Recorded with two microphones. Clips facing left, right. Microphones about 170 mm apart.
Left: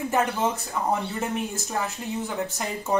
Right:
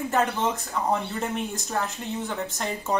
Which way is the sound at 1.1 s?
Centre (ahead or behind).